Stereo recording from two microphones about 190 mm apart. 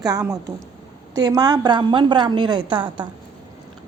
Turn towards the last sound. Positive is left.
turn(degrees=-25)  # may be behind; listen again after turning